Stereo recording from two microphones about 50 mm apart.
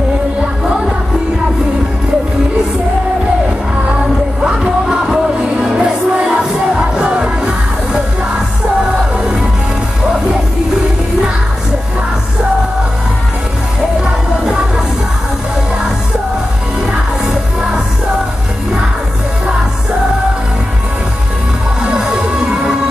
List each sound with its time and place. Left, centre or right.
4.8 s music: centre
21.9 s music: centre